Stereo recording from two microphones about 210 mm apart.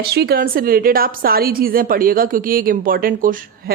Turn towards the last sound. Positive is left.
turn(degrees=-40)  # may be behind; listen again after turning